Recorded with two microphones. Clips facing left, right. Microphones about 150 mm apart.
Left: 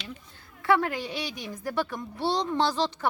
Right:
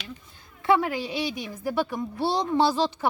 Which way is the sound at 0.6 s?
20° right (ahead or behind).